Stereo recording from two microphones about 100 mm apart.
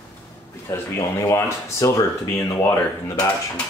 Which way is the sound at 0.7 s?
30° left (ahead or behind).